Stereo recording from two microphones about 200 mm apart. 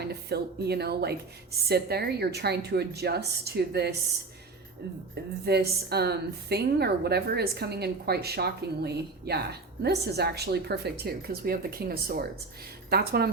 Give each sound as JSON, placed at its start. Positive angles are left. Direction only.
{"t": 0.0, "sound": "a woman's voice", "side_deg": -55}
{"t": 5.1, "sound": "a woman's voice", "side_deg": -55}